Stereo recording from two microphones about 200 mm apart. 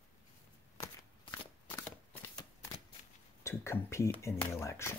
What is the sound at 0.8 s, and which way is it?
Shuffling cards, 15° left (ahead or behind).